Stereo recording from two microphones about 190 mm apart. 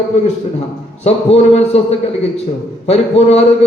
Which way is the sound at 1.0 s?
35° left (ahead or behind).